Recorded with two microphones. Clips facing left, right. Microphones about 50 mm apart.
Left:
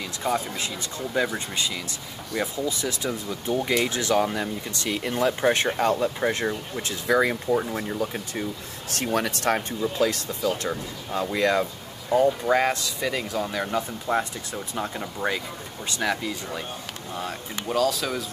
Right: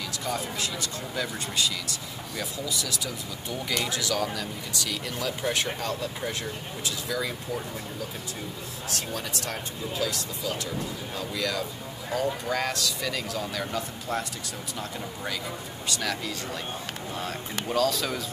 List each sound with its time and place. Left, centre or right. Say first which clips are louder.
0.2 s speech: left 5 dB; left
8.9 s speech: left 9 dB; left
12.4 s speech: left 6 dB; left
17.6 s speech: left 2 dB; centre